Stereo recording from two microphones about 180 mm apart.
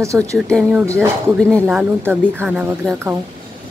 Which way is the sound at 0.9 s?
5° left (ahead or behind).